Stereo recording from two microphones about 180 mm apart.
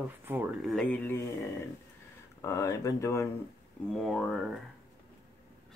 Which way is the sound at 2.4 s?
20° left (ahead or behind).